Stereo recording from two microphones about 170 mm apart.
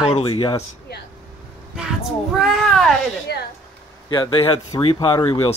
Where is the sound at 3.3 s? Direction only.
75° left (ahead or behind).